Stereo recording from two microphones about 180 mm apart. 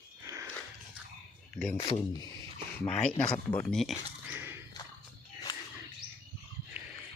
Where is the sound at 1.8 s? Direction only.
30° left (ahead or behind).